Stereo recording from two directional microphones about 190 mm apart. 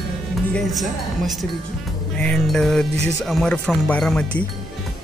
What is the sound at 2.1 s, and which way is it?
Speech, 5° left (ahead or behind).